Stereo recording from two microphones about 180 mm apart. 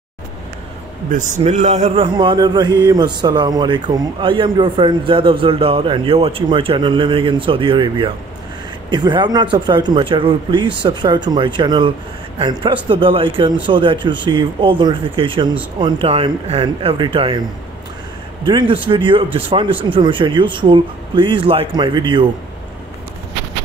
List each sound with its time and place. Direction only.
1.1 s a man's voice: 40° right (ahead or behind)
18.4 s a man's voice: 25° right (ahead or behind)